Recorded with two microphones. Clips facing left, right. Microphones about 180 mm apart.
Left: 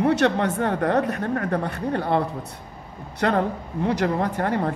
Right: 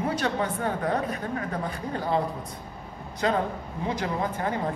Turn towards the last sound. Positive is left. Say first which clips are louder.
# left 4 dB
turn(degrees=70)  # may be behind; listen again after turning